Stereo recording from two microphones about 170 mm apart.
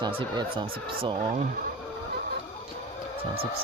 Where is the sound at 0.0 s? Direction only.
30° right (ahead or behind).